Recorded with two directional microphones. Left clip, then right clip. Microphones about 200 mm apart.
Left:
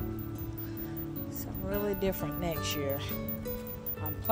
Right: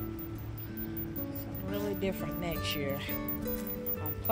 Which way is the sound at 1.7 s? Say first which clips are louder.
Left 2 dB; 15° left (ahead or behind).